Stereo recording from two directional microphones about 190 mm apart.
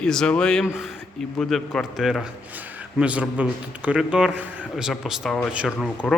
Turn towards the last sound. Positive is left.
turn(degrees=0)  # may be behind; listen again after turning